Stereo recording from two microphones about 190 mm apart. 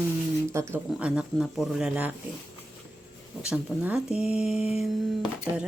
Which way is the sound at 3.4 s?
5° right (ahead or behind).